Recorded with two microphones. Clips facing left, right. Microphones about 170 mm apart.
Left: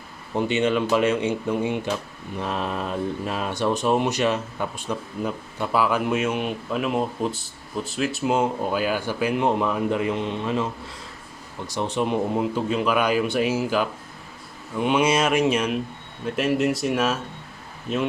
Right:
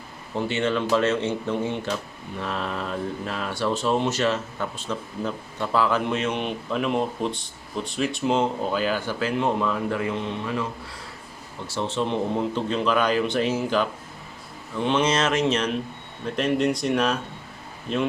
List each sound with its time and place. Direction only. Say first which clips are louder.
0.3 s speech: left 3 dB; 15° left (ahead or behind)